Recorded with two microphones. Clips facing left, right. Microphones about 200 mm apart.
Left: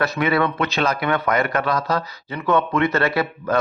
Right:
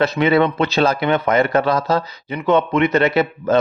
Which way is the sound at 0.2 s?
25° right (ahead or behind).